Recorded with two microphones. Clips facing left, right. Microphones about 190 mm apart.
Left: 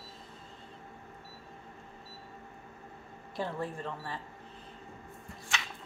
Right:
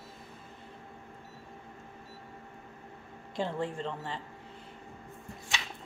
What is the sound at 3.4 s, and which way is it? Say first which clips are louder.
Speech: right 3 dB; 20° right (ahead or behind).